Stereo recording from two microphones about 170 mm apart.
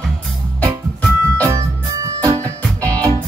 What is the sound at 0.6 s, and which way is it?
Music, 10° left (ahead or behind).